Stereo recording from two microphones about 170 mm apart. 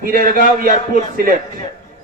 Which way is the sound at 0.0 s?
55° right (ahead or behind).